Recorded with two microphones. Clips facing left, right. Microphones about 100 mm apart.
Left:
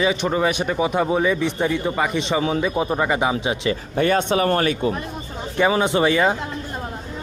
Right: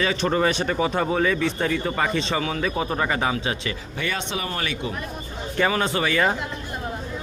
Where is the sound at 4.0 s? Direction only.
45° left (ahead or behind).